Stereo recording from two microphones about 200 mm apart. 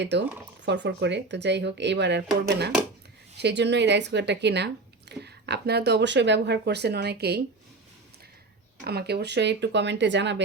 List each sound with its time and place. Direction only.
0.0 s speech: 60° right (ahead or behind)
8.8 s speech: 55° right (ahead or behind)